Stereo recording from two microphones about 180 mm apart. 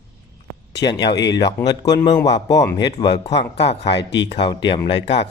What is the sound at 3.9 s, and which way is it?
Speech, 75° left (ahead or behind).